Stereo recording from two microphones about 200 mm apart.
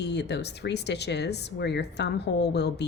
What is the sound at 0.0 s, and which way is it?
Speech, 60° left (ahead or behind).